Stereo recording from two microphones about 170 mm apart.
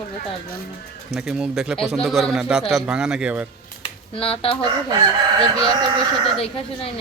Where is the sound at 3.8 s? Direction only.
35° left (ahead or behind).